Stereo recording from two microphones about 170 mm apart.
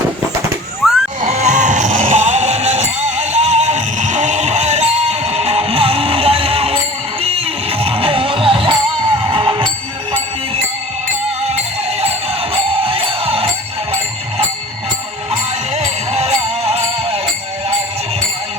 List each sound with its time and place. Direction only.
0.8 s a sound: centre (ahead or behind)
1.2 s music: 45° right (ahead or behind)
11.4 s music: 40° right (ahead or behind)
15.3 s music: 40° right (ahead or behind)